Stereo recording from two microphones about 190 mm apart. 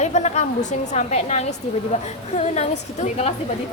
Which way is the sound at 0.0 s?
35° left (ahead or behind).